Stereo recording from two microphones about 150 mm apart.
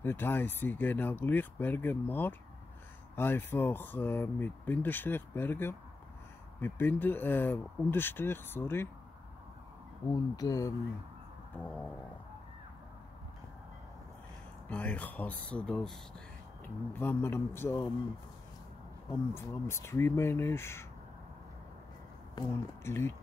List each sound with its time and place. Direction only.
0.0 s speech: 15° left (ahead or behind)
10.1 s speech: 25° left (ahead or behind)
11.6 s speech: 10° left (ahead or behind)
14.7 s speech: 10° left (ahead or behind)
19.3 s speech: 15° left (ahead or behind)
22.8 s speech: 15° left (ahead or behind)